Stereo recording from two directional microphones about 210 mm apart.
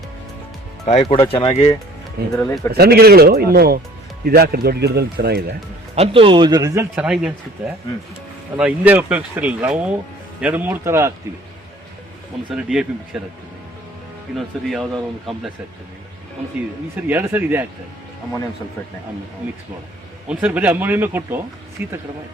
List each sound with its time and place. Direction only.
0.9 s speech: 30° left (ahead or behind)
2.3 s speech: 10° left (ahead or behind)
2.7 s speech: 50° right (ahead or behind)
6.0 s speech: 25° right (ahead or behind)
6.9 s speech: 5° right (ahead or behind)
8.5 s speech: 5° right (ahead or behind)
12.5 s speech: 5° right (ahead or behind)
14.3 s speech: centre (ahead or behind)
17.1 s speech: 10° right (ahead or behind)
20.2 s speech: 5° right (ahead or behind)